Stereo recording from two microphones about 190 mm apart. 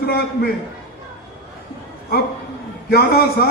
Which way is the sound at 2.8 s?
55° left (ahead or behind).